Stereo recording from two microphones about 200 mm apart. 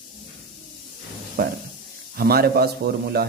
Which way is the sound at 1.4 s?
50° right (ahead or behind).